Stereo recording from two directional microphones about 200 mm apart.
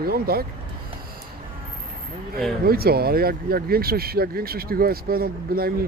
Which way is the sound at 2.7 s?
50° right (ahead or behind).